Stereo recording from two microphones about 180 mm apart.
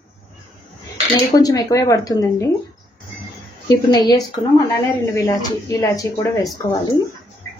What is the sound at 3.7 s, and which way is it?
Speech, 20° left (ahead or behind).